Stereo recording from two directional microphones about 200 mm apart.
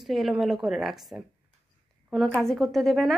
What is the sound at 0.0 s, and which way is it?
Speech, centre (ahead or behind).